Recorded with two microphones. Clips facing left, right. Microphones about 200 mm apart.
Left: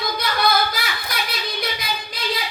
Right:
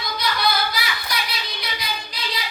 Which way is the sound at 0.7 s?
50° left (ahead or behind).